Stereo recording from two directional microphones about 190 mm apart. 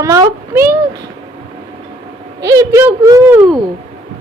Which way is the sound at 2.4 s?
15° right (ahead or behind).